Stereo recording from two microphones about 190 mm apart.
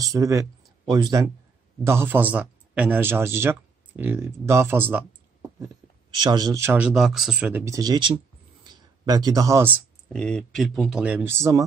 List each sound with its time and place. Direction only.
0.0 s a man's voice: 15° right (ahead or behind)
6.1 s speech: 20° right (ahead or behind)
10.0 s speech: 5° left (ahead or behind); by 11.6 s 15° right (ahead or behind)